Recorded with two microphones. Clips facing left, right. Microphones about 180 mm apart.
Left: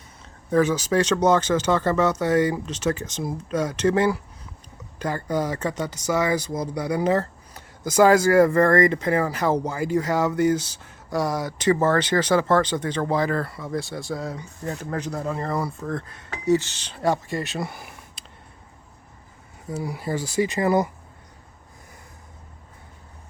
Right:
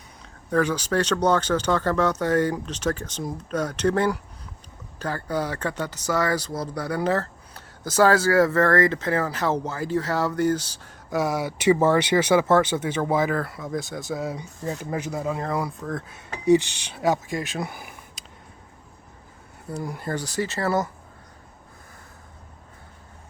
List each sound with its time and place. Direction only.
0.5 s speech: 5° left (ahead or behind)
11.1 s speech: 5° right (ahead or behind)
19.7 s speech: 5° left (ahead or behind)